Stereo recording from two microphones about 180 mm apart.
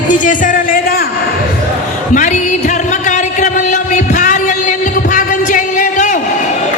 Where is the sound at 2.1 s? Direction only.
45° left (ahead or behind).